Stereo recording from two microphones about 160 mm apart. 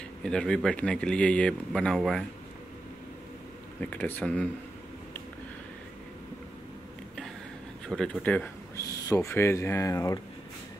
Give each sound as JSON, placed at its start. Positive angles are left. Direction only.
{"t": 0.2, "sound": "speech", "side_deg": 5}
{"t": 3.8, "sound": "speech", "side_deg": 10}
{"t": 7.9, "sound": "speech", "side_deg": 5}